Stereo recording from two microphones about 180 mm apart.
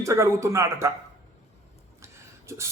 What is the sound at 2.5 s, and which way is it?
Speech, 15° right (ahead or behind).